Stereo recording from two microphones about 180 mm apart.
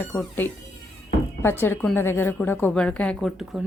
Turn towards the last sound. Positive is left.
turn(degrees=0)  # may be behind; listen again after turning